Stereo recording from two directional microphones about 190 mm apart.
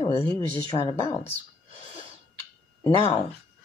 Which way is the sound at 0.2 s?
15° left (ahead or behind).